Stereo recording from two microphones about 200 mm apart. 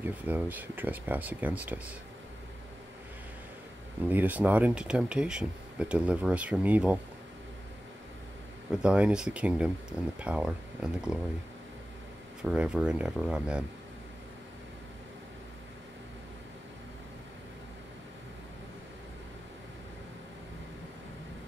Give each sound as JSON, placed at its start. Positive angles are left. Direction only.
{"t": 0.0, "sound": "speech", "side_deg": -10}
{"t": 4.1, "sound": "speech", "side_deg": -10}
{"t": 8.7, "sound": "speech", "side_deg": -5}
{"t": 12.4, "sound": "speech", "side_deg": -5}